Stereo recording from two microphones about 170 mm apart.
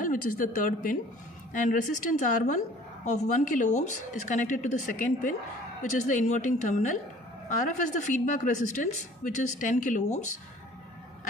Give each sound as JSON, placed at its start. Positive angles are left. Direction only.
{"t": 0.0, "sound": "a woman's voice", "side_deg": 55}